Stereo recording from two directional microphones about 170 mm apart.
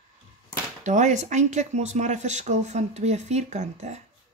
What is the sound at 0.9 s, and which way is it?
Speech, 45° right (ahead or behind).